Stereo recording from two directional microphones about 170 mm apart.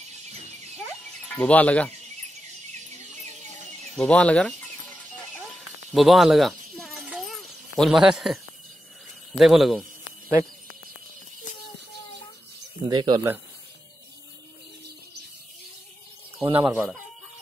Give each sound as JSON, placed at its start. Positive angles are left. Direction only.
{"t": 1.3, "sound": "speech", "side_deg": 10}
{"t": 3.9, "sound": "speech", "side_deg": 5}
{"t": 5.9, "sound": "a sound", "side_deg": 0}
{"t": 9.4, "sound": "speech", "side_deg": 0}
{"t": 12.8, "sound": "speech", "side_deg": -25}
{"t": 16.5, "sound": "speech", "side_deg": -10}